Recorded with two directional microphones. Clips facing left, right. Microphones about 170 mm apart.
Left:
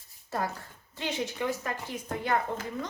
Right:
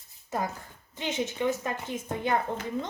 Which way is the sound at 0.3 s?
15° right (ahead or behind).